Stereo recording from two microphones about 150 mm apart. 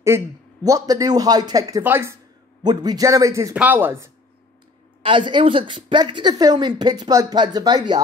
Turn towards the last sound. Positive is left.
turn(degrees=-25)  # may be behind; listen again after turning